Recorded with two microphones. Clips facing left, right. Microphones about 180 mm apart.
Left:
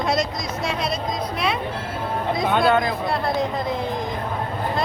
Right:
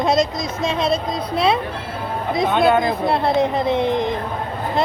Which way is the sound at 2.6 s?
25° right (ahead or behind).